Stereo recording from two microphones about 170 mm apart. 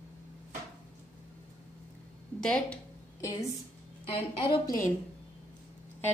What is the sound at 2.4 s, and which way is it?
Speech, 5° left (ahead or behind).